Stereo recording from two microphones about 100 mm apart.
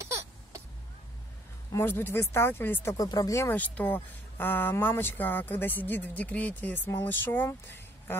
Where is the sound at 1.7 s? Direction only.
20° left (ahead or behind).